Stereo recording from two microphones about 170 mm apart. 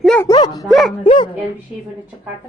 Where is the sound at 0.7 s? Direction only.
Centre (ahead or behind).